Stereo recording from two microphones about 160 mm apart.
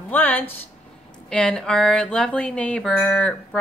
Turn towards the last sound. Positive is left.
turn(degrees=5)  # may be behind; listen again after turning